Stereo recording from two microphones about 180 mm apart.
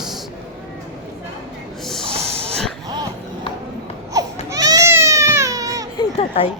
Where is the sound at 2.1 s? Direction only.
35° right (ahead or behind).